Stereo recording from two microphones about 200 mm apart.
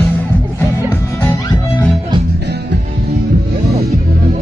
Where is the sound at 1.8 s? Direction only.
Centre (ahead or behind).